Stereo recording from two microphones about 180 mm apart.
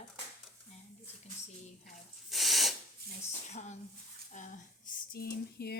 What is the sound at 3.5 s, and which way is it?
Speech, 40° left (ahead or behind).